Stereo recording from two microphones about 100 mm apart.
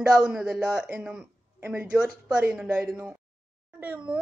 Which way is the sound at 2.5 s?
5° right (ahead or behind).